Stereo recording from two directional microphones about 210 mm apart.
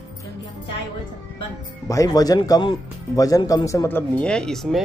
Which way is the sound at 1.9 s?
15° left (ahead or behind).